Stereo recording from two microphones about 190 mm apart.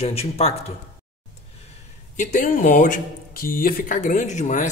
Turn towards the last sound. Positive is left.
turn(degrees=40)  # may be behind; listen again after turning